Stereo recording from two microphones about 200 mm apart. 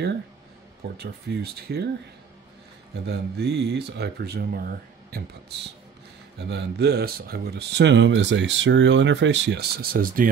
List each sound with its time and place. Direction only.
0.9 s speech: 55° right (ahead or behind)
3.1 s speech: 55° right (ahead or behind)
6.4 s speech: 60° right (ahead or behind); by 10.3 s 45° right (ahead or behind)